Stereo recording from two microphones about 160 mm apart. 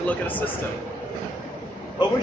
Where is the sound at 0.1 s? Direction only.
10° left (ahead or behind).